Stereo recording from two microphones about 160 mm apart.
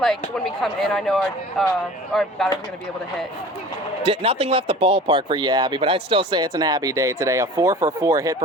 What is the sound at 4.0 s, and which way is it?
Speech, 40° right (ahead or behind).